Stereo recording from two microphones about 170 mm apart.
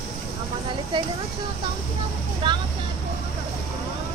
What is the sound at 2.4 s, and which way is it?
Vehicle, 30° right (ahead or behind).